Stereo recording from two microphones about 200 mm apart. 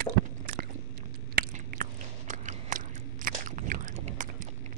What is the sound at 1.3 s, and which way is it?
Biting, 45° right (ahead or behind).